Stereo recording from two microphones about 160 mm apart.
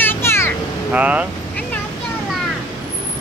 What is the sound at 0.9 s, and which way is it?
Speech, 10° right (ahead or behind).